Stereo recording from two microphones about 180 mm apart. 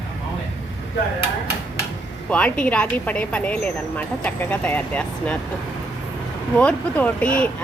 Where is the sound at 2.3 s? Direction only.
5° left (ahead or behind).